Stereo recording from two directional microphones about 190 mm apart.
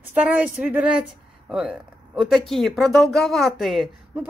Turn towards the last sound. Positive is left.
turn(degrees=0)  # may be behind; listen again after turning